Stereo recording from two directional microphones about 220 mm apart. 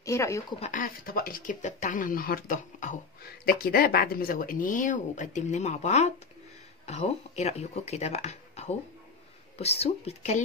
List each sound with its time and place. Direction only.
0.0 s speech: 15° left (ahead or behind)
0.6 s speech: 35° left (ahead or behind)